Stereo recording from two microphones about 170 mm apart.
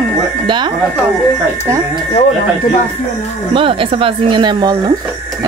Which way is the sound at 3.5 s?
30° right (ahead or behind).